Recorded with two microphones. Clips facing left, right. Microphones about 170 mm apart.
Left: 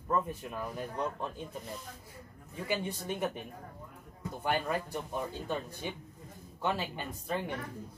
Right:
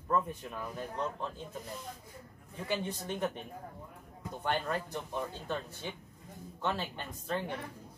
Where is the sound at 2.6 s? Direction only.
10° left (ahead or behind).